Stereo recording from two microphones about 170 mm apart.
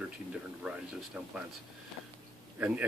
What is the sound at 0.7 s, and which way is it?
Speech, 5° right (ahead or behind).